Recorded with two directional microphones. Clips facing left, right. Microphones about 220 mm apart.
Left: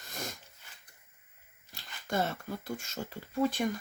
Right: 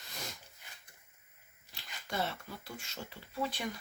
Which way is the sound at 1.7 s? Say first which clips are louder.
Left 6 dB; 45° left (ahead or behind).